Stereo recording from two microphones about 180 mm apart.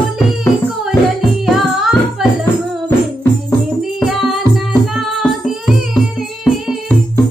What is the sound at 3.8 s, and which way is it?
Music, centre (ahead or behind).